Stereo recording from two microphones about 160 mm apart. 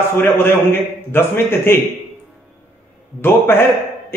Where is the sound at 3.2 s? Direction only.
15° left (ahead or behind).